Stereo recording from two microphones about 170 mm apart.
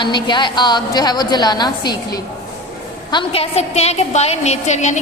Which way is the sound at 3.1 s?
30° left (ahead or behind).